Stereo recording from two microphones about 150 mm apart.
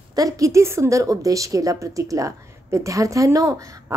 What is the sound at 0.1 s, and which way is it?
A woman's voice, 25° right (ahead or behind).